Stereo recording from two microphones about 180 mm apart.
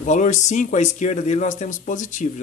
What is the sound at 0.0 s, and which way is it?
Speech, 45° left (ahead or behind).